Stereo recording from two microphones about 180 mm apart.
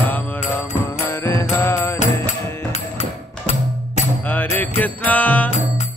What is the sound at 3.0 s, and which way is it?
Music, 35° left (ahead or behind).